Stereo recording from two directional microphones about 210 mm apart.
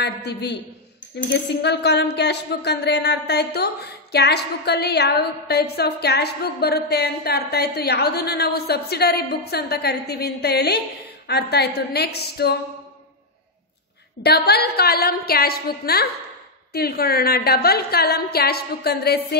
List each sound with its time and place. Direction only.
0.0 s speech: 50° left (ahead or behind)
14.2 s speech: 50° left (ahead or behind)